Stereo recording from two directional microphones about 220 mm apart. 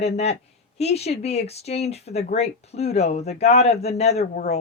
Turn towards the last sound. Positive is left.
turn(degrees=30)  # may be behind; listen again after turning